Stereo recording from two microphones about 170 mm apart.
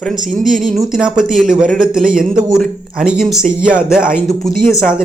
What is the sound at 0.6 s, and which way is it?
Speech, centre (ahead or behind).